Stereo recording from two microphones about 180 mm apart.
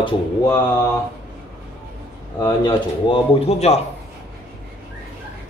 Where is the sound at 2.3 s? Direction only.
20° left (ahead or behind).